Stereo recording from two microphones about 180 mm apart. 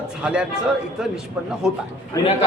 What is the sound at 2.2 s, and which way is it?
Speech, 20° left (ahead or behind).